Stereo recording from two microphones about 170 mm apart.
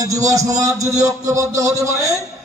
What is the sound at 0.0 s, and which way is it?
A man's voice, 20° right (ahead or behind).